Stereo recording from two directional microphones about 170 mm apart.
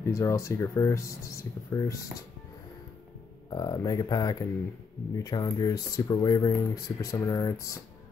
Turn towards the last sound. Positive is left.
turn(degrees=20)  # may be behind; listen again after turning